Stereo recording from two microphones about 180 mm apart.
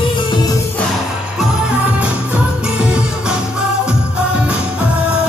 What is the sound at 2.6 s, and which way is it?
Music, 5° right (ahead or behind).